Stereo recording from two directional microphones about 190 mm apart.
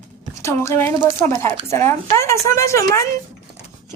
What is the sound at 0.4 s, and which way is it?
A woman's voice, 15° left (ahead or behind).